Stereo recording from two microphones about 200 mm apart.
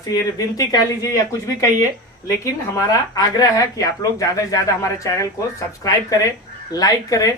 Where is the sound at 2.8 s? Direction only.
20° left (ahead or behind).